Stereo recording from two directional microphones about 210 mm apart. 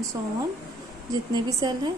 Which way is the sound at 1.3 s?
20° right (ahead or behind).